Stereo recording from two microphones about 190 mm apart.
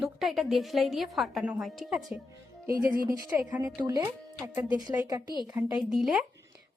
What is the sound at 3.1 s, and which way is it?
A woman's voice, 20° right (ahead or behind).